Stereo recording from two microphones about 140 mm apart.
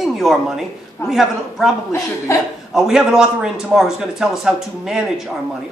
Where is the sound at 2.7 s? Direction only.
5° right (ahead or behind).